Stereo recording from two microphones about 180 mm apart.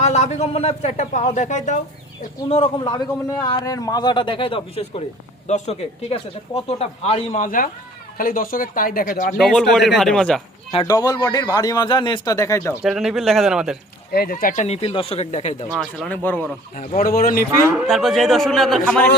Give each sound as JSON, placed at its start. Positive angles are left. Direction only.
{"t": 0.0, "sound": "speech", "side_deg": 40}
{"t": 2.5, "sound": "a man's voice", "side_deg": 30}
{"t": 9.4, "sound": "speech", "side_deg": 0}
{"t": 10.8, "sound": "a man's voice", "side_deg": 20}
{"t": 12.8, "sound": "speech", "side_deg": 0}
{"t": 14.1, "sound": "speech", "side_deg": 55}
{"t": 15.8, "sound": "speech", "side_deg": 5}
{"t": 16.7, "sound": "speech", "side_deg": 45}
{"t": 17.8, "sound": "speech", "side_deg": 0}